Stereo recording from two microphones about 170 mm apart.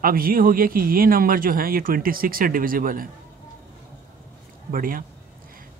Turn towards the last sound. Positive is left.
turn(degrees=-55)  # may be behind; listen again after turning